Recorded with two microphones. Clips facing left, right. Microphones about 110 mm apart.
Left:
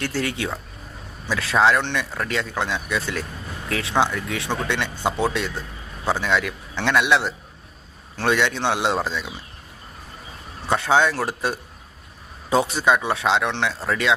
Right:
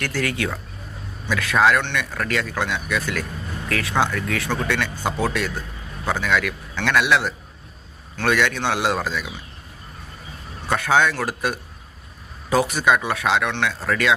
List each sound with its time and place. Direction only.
0.0 s speech: 25° left (ahead or behind)
10.7 s speech: 25° left (ahead or behind)